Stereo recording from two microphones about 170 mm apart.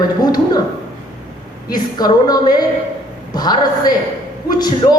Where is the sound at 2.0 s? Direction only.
25° left (ahead or behind).